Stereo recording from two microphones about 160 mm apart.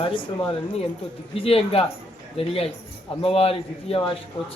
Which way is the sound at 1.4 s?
35° left (ahead or behind).